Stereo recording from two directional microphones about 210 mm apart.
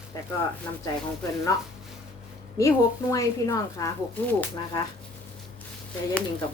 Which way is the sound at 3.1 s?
15° left (ahead or behind).